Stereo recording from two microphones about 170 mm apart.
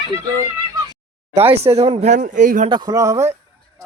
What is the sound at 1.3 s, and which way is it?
Speech, 35° right (ahead or behind).